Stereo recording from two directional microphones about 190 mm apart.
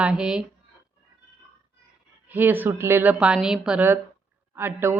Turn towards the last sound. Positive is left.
turn(degrees=-10)  # may be behind; listen again after turning